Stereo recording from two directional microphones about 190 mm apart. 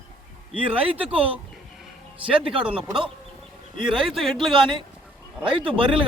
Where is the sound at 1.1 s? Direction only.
30° right (ahead or behind).